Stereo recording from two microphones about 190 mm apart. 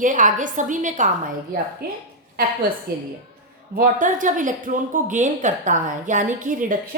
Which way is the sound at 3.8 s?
45° right (ahead or behind).